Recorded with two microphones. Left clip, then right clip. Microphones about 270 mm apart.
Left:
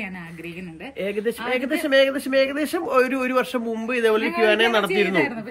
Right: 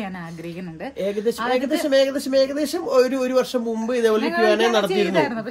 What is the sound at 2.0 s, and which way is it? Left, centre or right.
Speech, centre.